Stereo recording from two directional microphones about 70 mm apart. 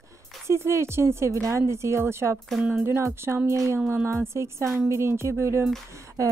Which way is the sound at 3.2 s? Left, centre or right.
Right.